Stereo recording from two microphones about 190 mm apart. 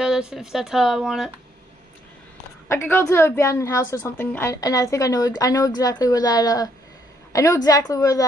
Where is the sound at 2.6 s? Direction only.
15° left (ahead or behind).